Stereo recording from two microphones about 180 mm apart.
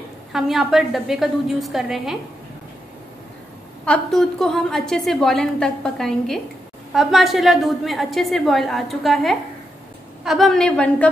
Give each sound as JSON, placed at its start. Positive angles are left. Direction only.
{"t": 0.3, "sound": "a woman's voice", "side_deg": 0}
{"t": 3.8, "sound": "a woman's voice", "side_deg": 5}